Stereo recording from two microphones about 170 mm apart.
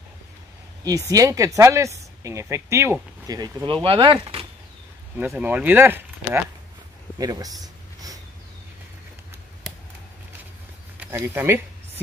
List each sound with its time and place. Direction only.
0.8 s speech: 20° right (ahead or behind)
5.1 s speech: 10° right (ahead or behind)
7.6 s a sound: 20° right (ahead or behind)
11.0 s speech: 10° right (ahead or behind)